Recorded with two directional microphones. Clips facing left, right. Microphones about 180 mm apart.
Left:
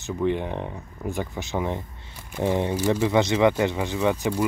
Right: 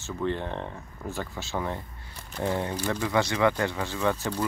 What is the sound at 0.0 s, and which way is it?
Speech, 15° left (ahead or behind).